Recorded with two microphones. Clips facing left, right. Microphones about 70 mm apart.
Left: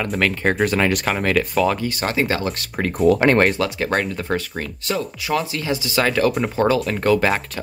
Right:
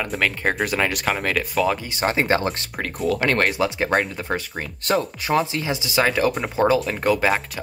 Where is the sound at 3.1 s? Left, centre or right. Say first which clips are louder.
Left 6 dB; left.